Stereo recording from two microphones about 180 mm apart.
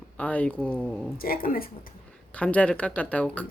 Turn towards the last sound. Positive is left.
turn(degrees=10)  # may be behind; listen again after turning